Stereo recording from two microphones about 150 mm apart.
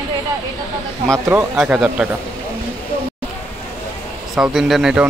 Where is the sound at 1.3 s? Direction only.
15° right (ahead or behind).